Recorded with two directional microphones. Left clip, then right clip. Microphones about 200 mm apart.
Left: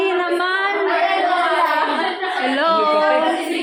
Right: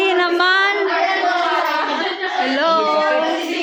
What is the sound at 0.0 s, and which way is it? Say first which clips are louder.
Child singing: right 3 dB; 10° right (ahead or behind).